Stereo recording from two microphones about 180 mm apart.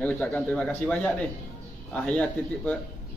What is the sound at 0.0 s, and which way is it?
Speech, 10° left (ahead or behind).